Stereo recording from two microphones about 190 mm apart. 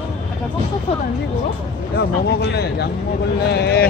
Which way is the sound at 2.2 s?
60° left (ahead or behind).